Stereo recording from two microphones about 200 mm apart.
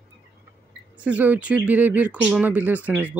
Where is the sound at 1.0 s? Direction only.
5° right (ahead or behind).